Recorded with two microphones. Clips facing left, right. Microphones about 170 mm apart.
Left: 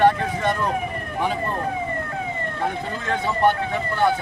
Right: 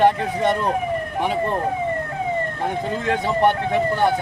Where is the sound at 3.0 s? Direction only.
20° right (ahead or behind).